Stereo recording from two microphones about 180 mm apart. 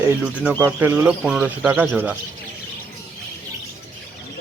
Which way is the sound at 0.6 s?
15° right (ahead or behind).